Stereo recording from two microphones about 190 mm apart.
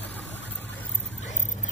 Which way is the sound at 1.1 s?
40° left (ahead or behind).